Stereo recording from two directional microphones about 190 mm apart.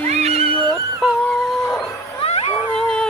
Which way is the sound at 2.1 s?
35° left (ahead or behind).